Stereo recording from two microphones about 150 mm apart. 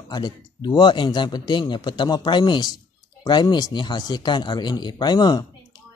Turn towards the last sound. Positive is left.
turn(degrees=25)  # may be behind; listen again after turning